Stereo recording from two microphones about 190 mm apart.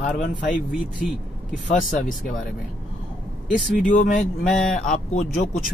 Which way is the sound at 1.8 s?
45° left (ahead or behind).